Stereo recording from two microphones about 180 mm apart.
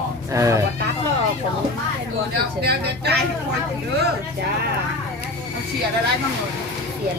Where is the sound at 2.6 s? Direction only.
65° right (ahead or behind).